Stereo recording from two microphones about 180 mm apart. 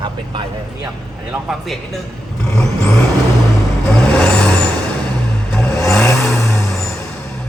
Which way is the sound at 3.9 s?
5° left (ahead or behind).